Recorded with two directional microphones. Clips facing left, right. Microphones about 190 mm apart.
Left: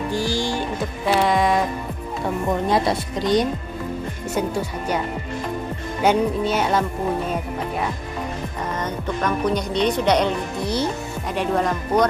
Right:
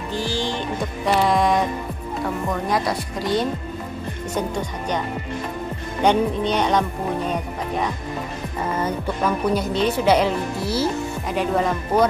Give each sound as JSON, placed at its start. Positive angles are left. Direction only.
{"t": 0.1, "sound": "music", "side_deg": 10}
{"t": 2.7, "sound": "speech", "side_deg": 25}
{"t": 4.3, "sound": "speech", "side_deg": 10}
{"t": 6.0, "sound": "a woman's voice", "side_deg": 5}
{"t": 8.7, "sound": "a woman's voice", "side_deg": -10}